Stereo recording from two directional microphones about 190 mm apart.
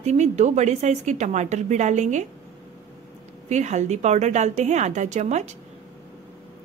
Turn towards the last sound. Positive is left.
turn(degrees=-40)  # may be behind; listen again after turning